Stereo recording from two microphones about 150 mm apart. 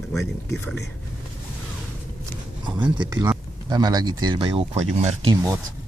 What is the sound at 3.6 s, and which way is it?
Speech, 25° right (ahead or behind).